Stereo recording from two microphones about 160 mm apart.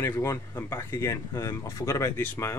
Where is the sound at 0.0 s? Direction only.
15° left (ahead or behind).